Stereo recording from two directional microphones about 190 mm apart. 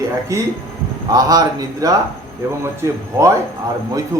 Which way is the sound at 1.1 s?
20° right (ahead or behind).